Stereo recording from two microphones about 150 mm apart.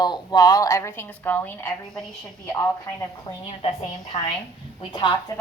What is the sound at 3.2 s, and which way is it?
A woman's voice, 40° left (ahead or behind).